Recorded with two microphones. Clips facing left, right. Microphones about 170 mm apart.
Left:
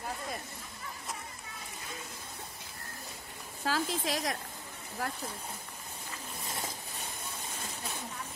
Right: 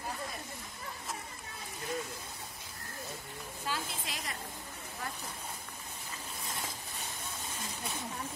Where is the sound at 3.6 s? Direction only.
90° left.